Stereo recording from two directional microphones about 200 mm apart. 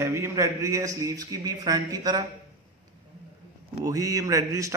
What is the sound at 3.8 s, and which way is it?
Speech, 15° right (ahead or behind).